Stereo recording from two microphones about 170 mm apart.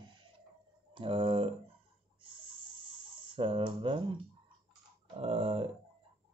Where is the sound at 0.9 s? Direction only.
30° right (ahead or behind).